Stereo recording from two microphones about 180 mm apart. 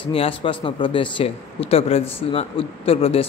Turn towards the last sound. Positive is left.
turn(degrees=30)  # may be behind; listen again after turning